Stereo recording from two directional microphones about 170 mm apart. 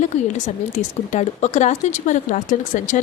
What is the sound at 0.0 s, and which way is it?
A woman's voice, 45° left (ahead or behind).